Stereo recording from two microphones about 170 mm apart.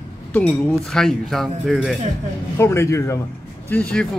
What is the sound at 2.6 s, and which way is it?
Speech, 15° left (ahead or behind).